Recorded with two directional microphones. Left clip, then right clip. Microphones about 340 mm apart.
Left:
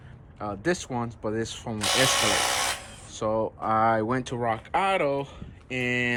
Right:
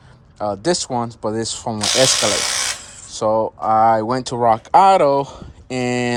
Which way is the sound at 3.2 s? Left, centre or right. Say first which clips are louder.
Right 9 dB; centre.